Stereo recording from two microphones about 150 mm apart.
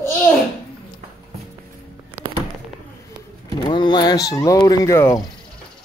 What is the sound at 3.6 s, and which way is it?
Speech, 30° left (ahead or behind).